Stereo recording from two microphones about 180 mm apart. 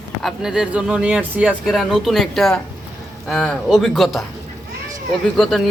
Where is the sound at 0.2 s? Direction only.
Centre (ahead or behind).